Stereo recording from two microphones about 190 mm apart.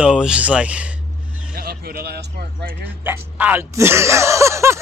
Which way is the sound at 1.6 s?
50° right (ahead or behind).